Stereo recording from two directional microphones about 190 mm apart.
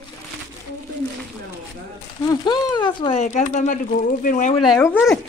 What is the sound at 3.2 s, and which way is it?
Speech, 40° left (ahead or behind).